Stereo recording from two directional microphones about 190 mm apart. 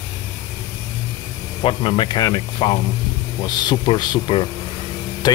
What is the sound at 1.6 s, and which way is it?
Speech, 25° left (ahead or behind).